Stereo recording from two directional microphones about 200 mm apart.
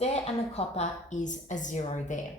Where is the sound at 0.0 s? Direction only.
30° left (ahead or behind).